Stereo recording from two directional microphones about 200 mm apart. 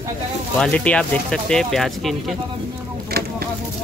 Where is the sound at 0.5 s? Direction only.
5° left (ahead or behind).